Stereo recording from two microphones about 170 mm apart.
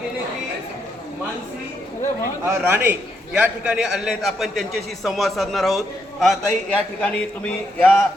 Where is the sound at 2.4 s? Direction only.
15° right (ahead or behind).